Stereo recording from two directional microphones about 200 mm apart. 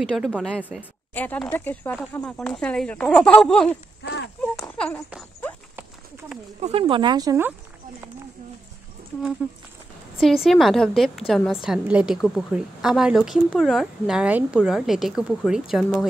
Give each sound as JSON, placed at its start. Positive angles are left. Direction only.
{"t": 0.1, "sound": "a woman's voice", "side_deg": 0}
{"t": 1.1, "sound": "a woman's voice", "side_deg": 10}
{"t": 4.0, "sound": "a sound", "side_deg": 60}
{"t": 4.6, "sound": "speech", "side_deg": 10}
{"t": 6.6, "sound": "speech", "side_deg": -25}
{"t": 10.1, "sound": "a woman's voice", "side_deg": 0}